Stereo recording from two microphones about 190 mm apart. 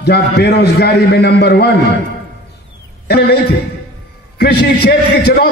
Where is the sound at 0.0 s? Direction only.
60° left (ahead or behind).